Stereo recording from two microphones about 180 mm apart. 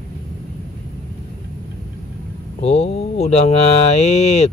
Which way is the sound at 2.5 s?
35° left (ahead or behind).